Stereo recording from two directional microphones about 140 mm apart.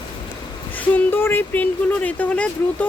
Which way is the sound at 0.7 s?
15° left (ahead or behind).